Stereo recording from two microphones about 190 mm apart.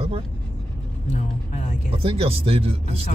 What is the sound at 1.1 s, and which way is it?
Speech, 40° left (ahead or behind).